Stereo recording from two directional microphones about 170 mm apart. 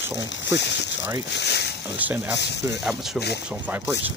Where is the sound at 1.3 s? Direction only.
80° left.